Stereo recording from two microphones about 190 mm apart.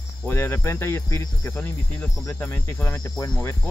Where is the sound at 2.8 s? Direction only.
15° left (ahead or behind).